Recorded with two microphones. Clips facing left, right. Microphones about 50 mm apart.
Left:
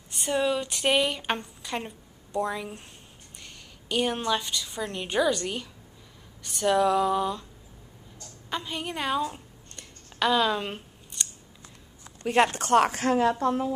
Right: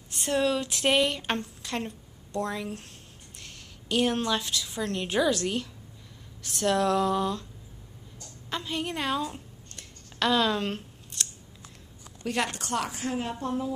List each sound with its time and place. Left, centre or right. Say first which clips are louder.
0.1 s a woman's voice: even; centre
8.5 s a sound: right 1 dB; centre
12.4 s speech: left 9 dB; left
13.1 s a woman's voice: left 9 dB; left